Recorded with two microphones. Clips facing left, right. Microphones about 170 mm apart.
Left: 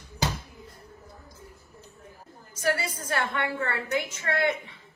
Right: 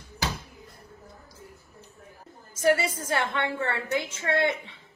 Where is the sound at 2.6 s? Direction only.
25° right (ahead or behind).